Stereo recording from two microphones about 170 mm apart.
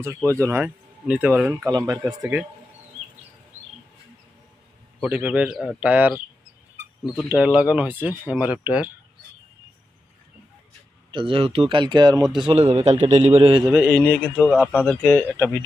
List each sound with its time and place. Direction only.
0.4 s speech: 10° right (ahead or behind)
1.7 s speech: 20° right (ahead or behind)
5.0 s speech: 10° right (ahead or behind)
11.1 s a man's voice: 30° right (ahead or behind)
12.5 s a man's voice: 35° right (ahead or behind)
13.6 s speech: 15° right (ahead or behind)
13.9 s speech: 10° left (ahead or behind)